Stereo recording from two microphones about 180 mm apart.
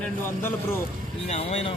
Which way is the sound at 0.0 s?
15° left (ahead or behind).